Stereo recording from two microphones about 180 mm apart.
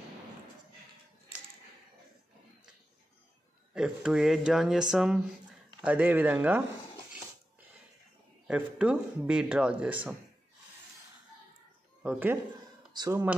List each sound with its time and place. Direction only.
3.7 s speech: 5° right (ahead or behind)
8.5 s speech: 5° right (ahead or behind)
12.0 s speech: 10° right (ahead or behind)
12.9 s speech: 25° right (ahead or behind)